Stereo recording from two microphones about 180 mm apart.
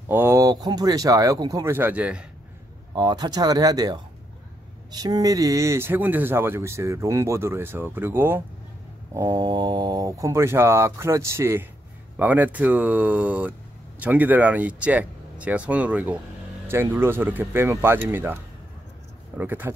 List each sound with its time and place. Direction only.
0.1 s speech: 15° right (ahead or behind)
2.9 s speech: 25° right (ahead or behind)